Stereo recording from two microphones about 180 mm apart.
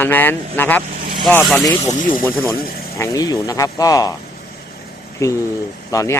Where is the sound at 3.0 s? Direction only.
20° left (ahead or behind).